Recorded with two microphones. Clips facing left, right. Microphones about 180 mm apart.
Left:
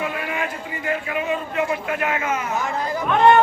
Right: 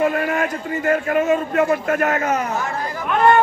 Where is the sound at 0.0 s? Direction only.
45° right (ahead or behind).